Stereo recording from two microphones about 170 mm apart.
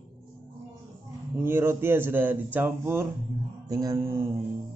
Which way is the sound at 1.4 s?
15° right (ahead or behind).